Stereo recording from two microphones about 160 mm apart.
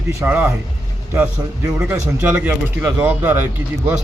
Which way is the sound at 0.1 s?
15° right (ahead or behind).